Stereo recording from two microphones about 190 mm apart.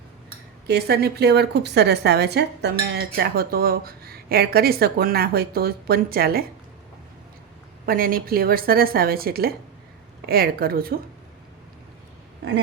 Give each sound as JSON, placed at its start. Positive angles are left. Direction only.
{"t": 0.7, "sound": "a woman's voice", "side_deg": -60}
{"t": 7.9, "sound": "a woman's voice", "side_deg": -50}